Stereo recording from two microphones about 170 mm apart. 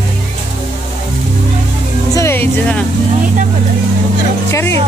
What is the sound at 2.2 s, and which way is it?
Music, 15° left (ahead or behind).